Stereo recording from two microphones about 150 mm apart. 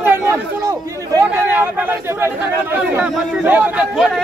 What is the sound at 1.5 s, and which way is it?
Speech, 10° right (ahead or behind).